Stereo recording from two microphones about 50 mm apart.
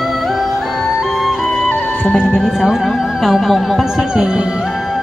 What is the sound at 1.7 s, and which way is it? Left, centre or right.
Music, left.